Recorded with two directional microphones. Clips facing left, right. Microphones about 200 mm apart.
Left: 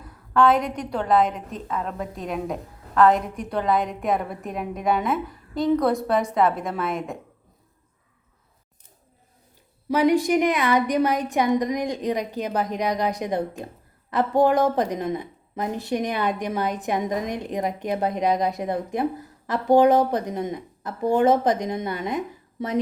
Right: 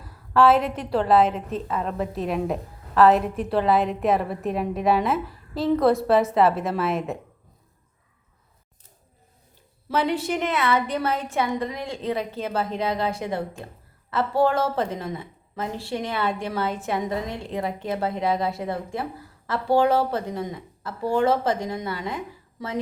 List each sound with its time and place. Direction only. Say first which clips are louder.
0.0 s a woman's voice: right 1 dB; 5° right (ahead or behind)
9.9 s a woman's voice: left 5 dB; 10° left (ahead or behind)